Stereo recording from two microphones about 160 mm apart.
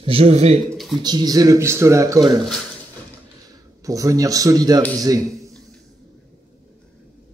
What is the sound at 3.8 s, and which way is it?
A man's voice, 20° right (ahead or behind).